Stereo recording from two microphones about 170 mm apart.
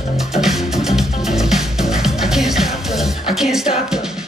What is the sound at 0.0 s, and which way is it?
Music, centre (ahead or behind).